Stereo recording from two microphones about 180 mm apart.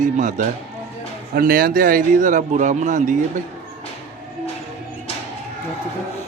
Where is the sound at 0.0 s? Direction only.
45° right (ahead or behind).